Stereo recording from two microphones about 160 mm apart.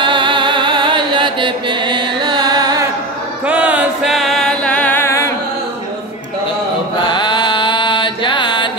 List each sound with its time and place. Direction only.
0.0 s chant: 30° right (ahead or behind)
3.4 s music: 10° right (ahead or behind); by 5.3 s 15° left (ahead or behind)
7.1 s mantra: 30° left (ahead or behind)